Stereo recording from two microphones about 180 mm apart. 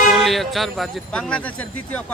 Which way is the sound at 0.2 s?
Centre (ahead or behind).